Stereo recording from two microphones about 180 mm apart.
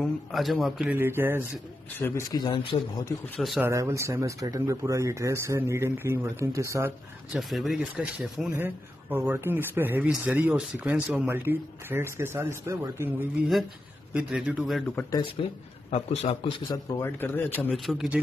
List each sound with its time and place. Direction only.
0.0 s speech: centre (ahead or behind)
2.0 s speech: 15° left (ahead or behind)
3.3 s speech: centre (ahead or behind)
3.6 s speech: 15° right (ahead or behind)
7.3 s speech: centre (ahead or behind)
15.4 s a man's voice: 30° left (ahead or behind)
17.0 s speech: 10° left (ahead or behind)